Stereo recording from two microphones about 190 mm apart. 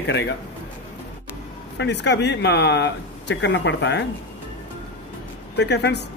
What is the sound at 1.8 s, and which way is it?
Speech, 65° left (ahead or behind).